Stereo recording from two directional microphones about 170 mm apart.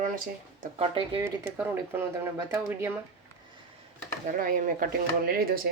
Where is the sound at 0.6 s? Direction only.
35° right (ahead or behind).